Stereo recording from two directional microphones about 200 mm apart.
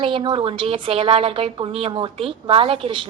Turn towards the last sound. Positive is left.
turn(degrees=-25)  # may be behind; listen again after turning